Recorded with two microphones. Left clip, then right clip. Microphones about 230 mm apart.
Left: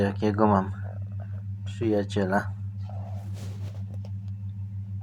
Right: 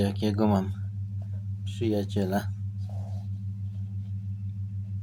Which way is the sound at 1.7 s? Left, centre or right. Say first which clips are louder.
Left 2 dB; centre.